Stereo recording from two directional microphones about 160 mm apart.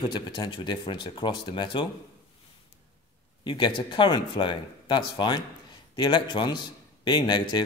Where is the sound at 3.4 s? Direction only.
30° left (ahead or behind).